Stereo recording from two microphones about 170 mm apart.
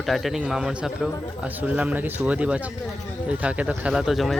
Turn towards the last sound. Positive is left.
turn(degrees=0)  # may be behind; listen again after turning